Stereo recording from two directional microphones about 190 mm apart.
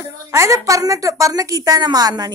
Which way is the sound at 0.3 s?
15° right (ahead or behind).